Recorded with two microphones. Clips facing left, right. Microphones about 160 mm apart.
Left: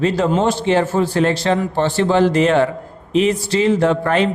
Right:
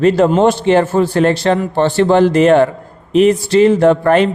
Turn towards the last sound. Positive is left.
turn(degrees=-55)  # may be behind; listen again after turning